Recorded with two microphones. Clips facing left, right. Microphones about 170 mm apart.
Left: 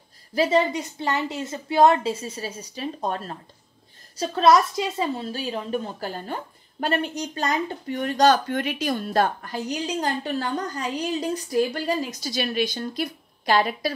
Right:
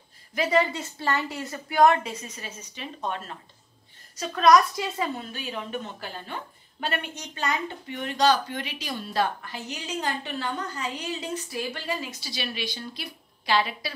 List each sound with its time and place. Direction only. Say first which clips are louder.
0.3 s a woman's voice: left 3 dB; 30° left (ahead or behind); by 13.9 s 45° left (ahead or behind)